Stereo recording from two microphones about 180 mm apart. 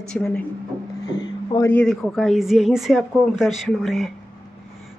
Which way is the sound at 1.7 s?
Centre (ahead or behind).